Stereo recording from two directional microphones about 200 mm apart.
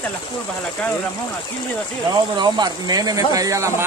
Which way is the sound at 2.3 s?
20° right (ahead or behind).